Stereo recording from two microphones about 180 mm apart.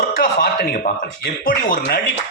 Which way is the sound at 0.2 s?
60° left (ahead or behind).